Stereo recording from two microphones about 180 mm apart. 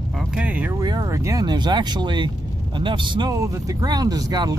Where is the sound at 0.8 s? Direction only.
20° right (ahead or behind).